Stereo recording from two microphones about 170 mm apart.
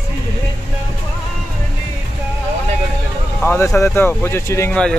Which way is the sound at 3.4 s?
15° left (ahead or behind).